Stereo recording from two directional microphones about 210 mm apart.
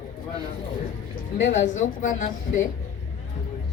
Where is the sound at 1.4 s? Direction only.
35° left (ahead or behind).